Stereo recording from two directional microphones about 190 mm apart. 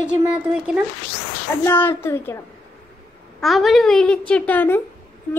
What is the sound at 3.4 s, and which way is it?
A woman's voice, centre (ahead or behind).